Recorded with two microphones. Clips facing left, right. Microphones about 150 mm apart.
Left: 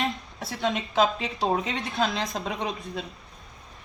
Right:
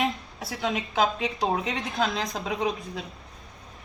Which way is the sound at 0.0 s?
Centre (ahead or behind).